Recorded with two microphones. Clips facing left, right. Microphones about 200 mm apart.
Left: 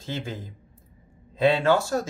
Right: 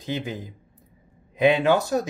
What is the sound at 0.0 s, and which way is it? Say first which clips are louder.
Speech: right 3 dB; 15° right (ahead or behind).